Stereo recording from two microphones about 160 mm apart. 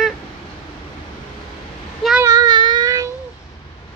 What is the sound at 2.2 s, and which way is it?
Child singing, 25° right (ahead or behind).